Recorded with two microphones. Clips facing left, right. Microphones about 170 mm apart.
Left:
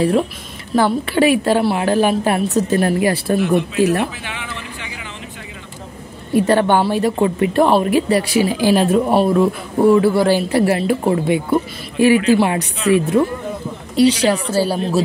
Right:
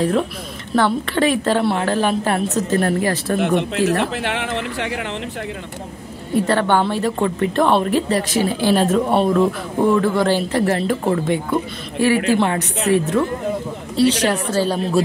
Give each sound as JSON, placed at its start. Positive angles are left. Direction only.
{"t": 0.7, "sound": "a woman's voice", "side_deg": 10}
{"t": 3.3, "sound": "speech", "side_deg": -60}
{"t": 3.8, "sound": "a woman's voice", "side_deg": 15}
{"t": 4.1, "sound": "speech", "side_deg": -70}
{"t": 6.3, "sound": "a woman's voice", "side_deg": 15}